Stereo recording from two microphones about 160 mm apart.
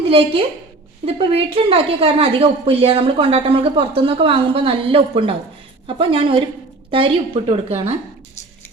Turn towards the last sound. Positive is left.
turn(degrees=-40)  # may be behind; listen again after turning